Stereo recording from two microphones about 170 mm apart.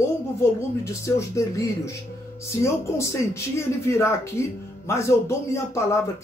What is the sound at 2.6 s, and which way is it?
Speech, 15° left (ahead or behind).